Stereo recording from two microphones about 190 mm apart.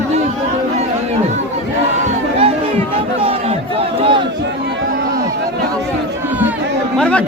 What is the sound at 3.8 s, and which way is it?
Crowd, 30° right (ahead or behind).